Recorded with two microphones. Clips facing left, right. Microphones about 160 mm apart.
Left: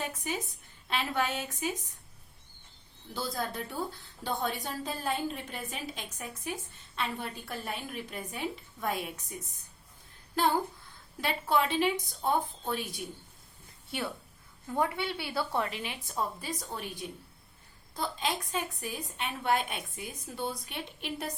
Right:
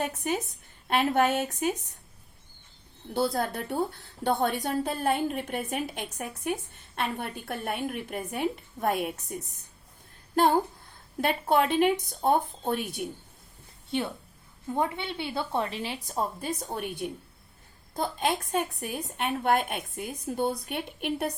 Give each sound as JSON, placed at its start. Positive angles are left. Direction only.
{"t": 0.2, "sound": "a woman's voice", "side_deg": -55}
{"t": 3.1, "sound": "a woman's voice", "side_deg": -60}
{"t": 14.7, "sound": "a woman's voice", "side_deg": -20}